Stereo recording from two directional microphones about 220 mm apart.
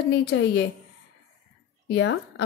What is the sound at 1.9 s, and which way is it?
Speech, 50° left (ahead or behind).